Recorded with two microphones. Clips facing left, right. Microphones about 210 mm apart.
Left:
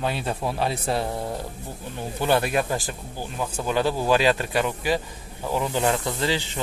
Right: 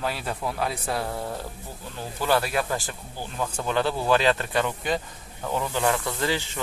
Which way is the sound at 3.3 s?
10° left (ahead or behind).